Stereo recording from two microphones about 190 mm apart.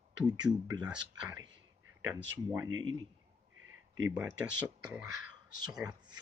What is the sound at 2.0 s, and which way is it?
Speech, 10° right (ahead or behind).